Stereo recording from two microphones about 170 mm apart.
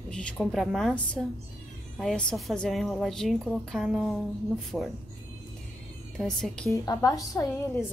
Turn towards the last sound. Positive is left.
turn(degrees=20)  # may be behind; listen again after turning